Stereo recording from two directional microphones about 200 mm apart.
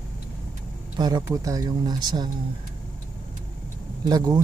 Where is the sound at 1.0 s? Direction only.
20° right (ahead or behind).